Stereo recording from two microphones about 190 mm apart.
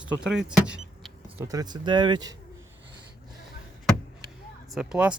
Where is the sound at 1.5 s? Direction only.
20° right (ahead or behind).